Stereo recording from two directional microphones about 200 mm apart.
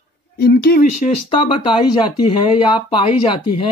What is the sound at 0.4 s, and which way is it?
Speech, 50° left (ahead or behind).